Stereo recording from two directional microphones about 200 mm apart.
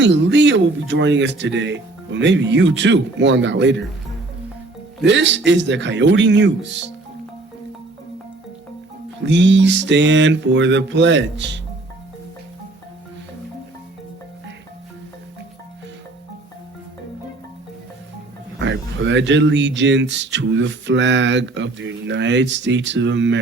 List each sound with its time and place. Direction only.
0.0 s speech: 65° right (ahead or behind)
5.0 s speech: 65° right (ahead or behind)
9.2 s speech: 65° right (ahead or behind)
18.6 s speech: 65° right (ahead or behind)